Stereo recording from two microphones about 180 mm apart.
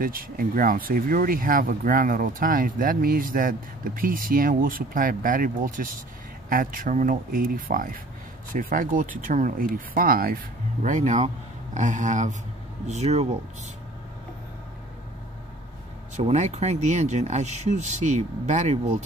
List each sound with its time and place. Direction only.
0.0 s speech: 50° right (ahead or behind)
16.2 s speech: 40° right (ahead or behind)